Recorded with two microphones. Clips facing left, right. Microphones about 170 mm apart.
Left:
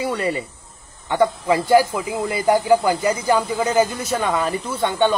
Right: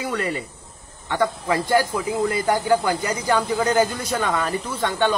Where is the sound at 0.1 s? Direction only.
10° left (ahead or behind).